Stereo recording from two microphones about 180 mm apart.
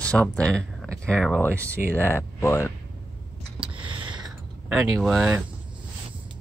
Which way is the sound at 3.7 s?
25° right (ahead or behind).